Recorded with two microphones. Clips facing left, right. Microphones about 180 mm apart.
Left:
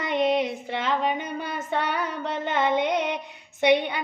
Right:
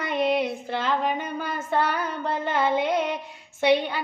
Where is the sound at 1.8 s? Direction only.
20° left (ahead or behind).